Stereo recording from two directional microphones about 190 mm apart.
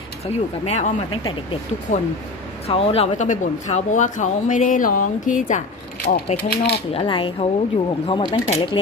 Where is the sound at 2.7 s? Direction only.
30° left (ahead or behind); by 6.8 s 60° left (ahead or behind).